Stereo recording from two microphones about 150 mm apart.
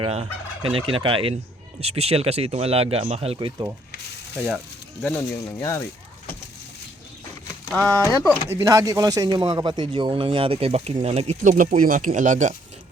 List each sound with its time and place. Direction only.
0.0 s fowl: 45° right (ahead or behind)
0.7 s speech: 35° right (ahead or behind)
4.4 s speech: 10° right (ahead or behind)
5.0 s speech: 10° left (ahead or behind)
7.7 s speech: 5° left (ahead or behind)
8.4 s speech: 20° right (ahead or behind); by 11.3 s 45° right (ahead or behind)
11.4 s speech: 60° right (ahead or behind)